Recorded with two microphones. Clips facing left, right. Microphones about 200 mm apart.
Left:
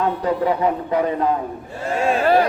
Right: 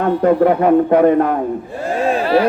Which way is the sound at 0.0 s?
55° right (ahead or behind).